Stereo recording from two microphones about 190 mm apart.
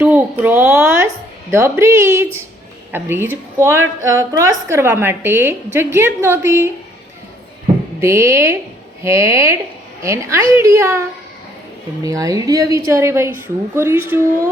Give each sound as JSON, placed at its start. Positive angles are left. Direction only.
{"t": 0.0, "sound": "a sound", "side_deg": -5}
{"t": 1.5, "sound": "a woman's voice", "side_deg": -15}
{"t": 8.0, "sound": "a woman's voice", "side_deg": -15}
{"t": 12.0, "sound": "a woman's voice", "side_deg": -20}